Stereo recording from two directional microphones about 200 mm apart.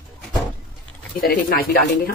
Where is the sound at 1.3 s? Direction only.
50° left (ahead or behind).